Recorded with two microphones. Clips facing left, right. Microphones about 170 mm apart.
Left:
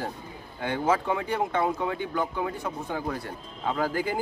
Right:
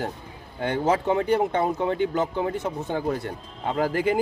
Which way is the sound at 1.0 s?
30° right (ahead or behind).